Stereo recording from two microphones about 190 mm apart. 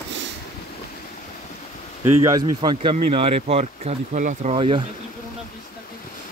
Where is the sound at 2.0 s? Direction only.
15° right (ahead or behind).